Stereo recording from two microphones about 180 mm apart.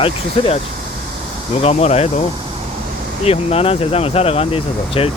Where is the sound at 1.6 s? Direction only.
40° left (ahead or behind).